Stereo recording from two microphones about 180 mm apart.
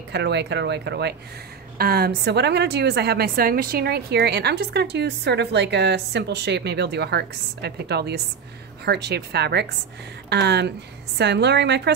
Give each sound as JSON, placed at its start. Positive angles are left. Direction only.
{"t": 0.1, "sound": "a woman's voice", "side_deg": -70}